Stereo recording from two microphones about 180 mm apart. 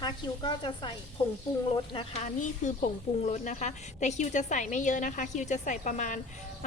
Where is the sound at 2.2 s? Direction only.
40° left (ahead or behind).